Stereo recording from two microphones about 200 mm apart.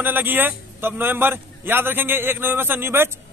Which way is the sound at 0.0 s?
10° right (ahead or behind).